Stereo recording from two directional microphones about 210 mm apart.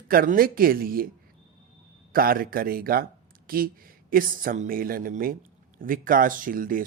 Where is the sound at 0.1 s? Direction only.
45° right (ahead or behind).